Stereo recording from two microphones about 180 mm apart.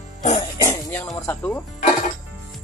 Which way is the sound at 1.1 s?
15° left (ahead or behind).